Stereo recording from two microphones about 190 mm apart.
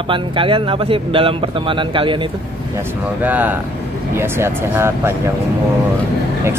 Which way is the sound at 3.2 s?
10° right (ahead or behind).